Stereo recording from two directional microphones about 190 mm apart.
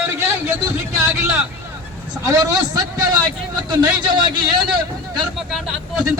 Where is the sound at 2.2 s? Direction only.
15° right (ahead or behind).